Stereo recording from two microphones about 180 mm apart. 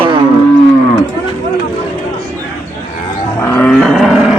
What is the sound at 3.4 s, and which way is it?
Roaring cats, 10° left (ahead or behind).